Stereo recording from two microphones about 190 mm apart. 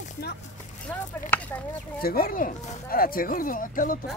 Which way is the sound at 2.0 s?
50° left (ahead or behind).